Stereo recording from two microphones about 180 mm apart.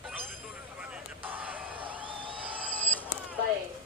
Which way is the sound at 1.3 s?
10° right (ahead or behind).